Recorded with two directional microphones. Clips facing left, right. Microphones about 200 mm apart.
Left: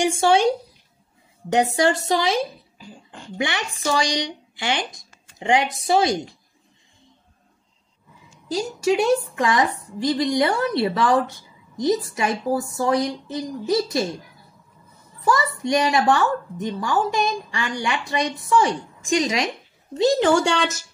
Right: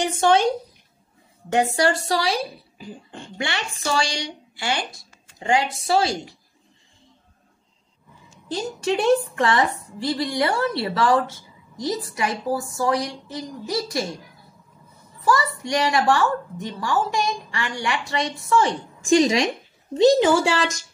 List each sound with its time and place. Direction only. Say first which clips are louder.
0.0 s a woman's voice: left 1 dB; 10° left (ahead or behind)
2.8 s speech: right 5 dB; 25° right (ahead or behind)
3.3 s a woman's voice: left 3 dB; 15° left (ahead or behind)
8.5 s a woman's voice: left 3 dB; 5° left (ahead or behind); by 14.0 s 25° left (ahead or behind)
15.2 s a woman's voice: left 1 dB; 20° left (ahead or behind)
19.0 s a woman's voice: right 4 dB; 30° right (ahead or behind)
20.2 s a woman's voice: even; 5° right (ahead or behind)